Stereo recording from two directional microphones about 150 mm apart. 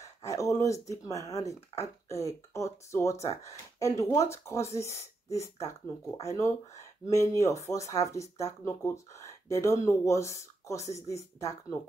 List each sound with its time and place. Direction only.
0.0 s speech: 20° left (ahead or behind)